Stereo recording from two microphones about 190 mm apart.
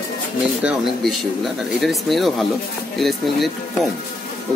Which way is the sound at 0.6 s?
Centre (ahead or behind).